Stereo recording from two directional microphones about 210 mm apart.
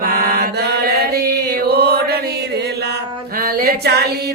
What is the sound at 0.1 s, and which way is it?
Mantra, 45° right (ahead or behind).